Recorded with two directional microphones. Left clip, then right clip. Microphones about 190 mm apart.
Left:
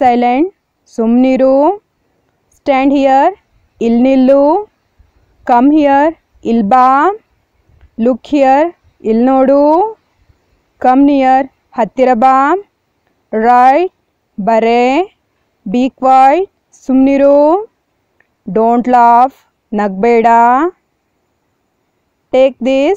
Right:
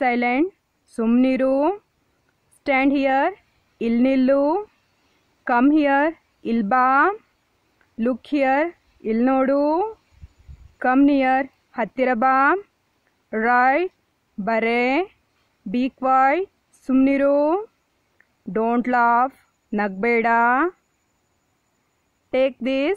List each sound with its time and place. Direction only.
0.0 s a woman's voice: 20° left (ahead or behind)
22.3 s speech: 15° left (ahead or behind)